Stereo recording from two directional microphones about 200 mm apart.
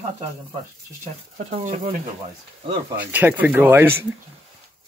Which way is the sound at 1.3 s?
40° right (ahead or behind).